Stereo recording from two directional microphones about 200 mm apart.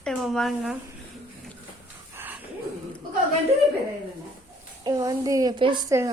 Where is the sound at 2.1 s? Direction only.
10° right (ahead or behind).